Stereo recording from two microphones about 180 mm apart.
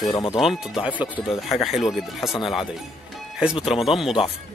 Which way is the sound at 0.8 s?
10° right (ahead or behind).